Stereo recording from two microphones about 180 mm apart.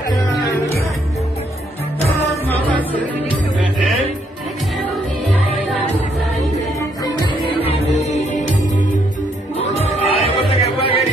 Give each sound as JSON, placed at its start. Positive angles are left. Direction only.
{"t": 7.6, "sound": "music", "side_deg": 35}